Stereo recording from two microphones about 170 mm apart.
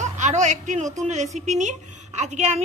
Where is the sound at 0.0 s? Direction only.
45° right (ahead or behind).